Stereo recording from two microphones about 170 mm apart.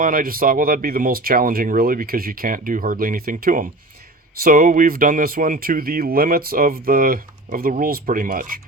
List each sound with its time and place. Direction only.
0.0 s speech: 55° right (ahead or behind)